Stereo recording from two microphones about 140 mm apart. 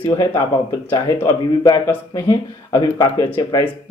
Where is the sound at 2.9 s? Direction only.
25° left (ahead or behind).